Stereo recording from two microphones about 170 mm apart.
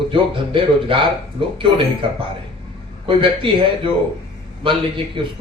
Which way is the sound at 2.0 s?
30° right (ahead or behind).